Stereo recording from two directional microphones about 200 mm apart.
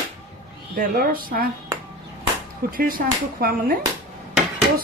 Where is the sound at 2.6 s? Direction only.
45° right (ahead or behind).